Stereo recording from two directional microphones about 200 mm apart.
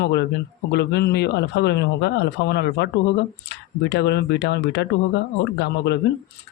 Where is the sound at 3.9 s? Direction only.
60° left (ahead or behind).